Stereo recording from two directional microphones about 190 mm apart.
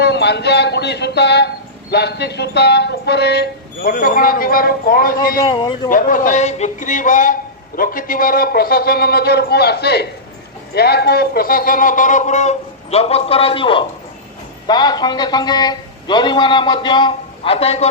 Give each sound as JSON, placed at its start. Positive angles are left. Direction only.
{"t": 0.0, "sound": "speech", "side_deg": 65}
{"t": 5.4, "sound": "speech", "side_deg": 25}
{"t": 5.9, "sound": "a man's voice", "side_deg": 45}